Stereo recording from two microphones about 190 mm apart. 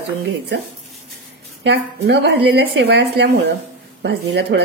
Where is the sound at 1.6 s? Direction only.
60° right (ahead or behind).